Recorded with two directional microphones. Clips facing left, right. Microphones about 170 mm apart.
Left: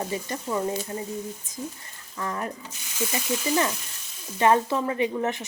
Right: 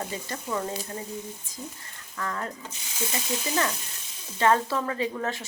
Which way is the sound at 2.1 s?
20° left (ahead or behind).